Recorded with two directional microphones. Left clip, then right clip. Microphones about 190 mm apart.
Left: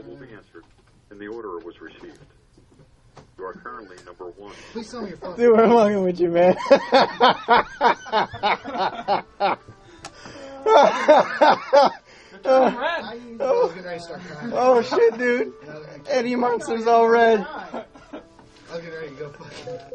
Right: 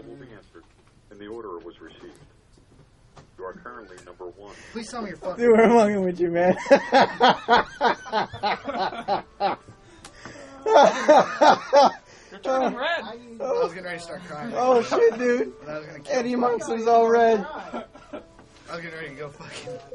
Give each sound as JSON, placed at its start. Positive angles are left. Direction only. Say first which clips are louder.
{"t": 1.2, "sound": "speech", "louder": "left 3 dB", "side_deg": 30}
{"t": 3.3, "sound": "a sound", "louder": "left 3 dB", "side_deg": 30}
{"t": 4.7, "sound": "snicker", "louder": "even", "side_deg": 0}
{"t": 10.6, "sound": "speech", "louder": "left 1 dB", "side_deg": 5}
{"t": 12.4, "sound": "snicker", "louder": "left 6 dB", "side_deg": 0}